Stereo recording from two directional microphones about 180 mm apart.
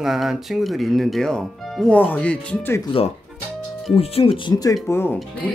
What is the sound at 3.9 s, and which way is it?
Speech, 30° left (ahead or behind).